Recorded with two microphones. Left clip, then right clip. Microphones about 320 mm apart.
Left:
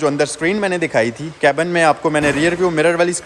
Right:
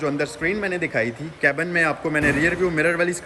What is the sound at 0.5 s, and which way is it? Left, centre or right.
A man's voice, centre.